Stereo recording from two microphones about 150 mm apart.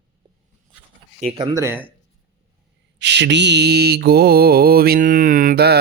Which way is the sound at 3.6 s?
90° right.